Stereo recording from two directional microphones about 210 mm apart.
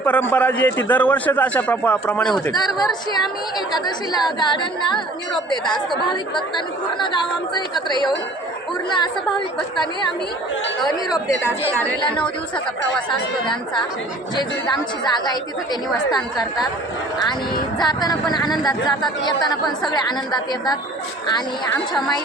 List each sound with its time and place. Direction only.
0.0 s a man's voice: 5° left (ahead or behind)
2.7 s speech: 20° left (ahead or behind)
12.0 s speech: 25° left (ahead or behind)
15.0 s speech: 20° left (ahead or behind)
17.7 s speech: 20° left (ahead or behind)